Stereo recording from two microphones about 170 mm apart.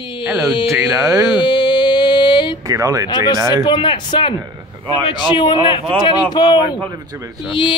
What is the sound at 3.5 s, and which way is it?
Speech, 25° left (ahead or behind).